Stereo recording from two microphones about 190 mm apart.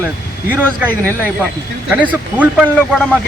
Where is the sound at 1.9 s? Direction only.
10° right (ahead or behind).